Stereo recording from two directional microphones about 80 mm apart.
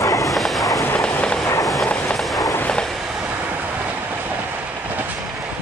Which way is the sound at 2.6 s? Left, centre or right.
Centre.